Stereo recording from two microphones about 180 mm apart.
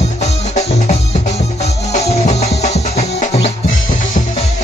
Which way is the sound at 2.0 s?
35° left (ahead or behind).